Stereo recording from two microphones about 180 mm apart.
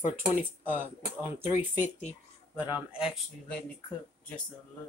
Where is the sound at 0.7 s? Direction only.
10° right (ahead or behind).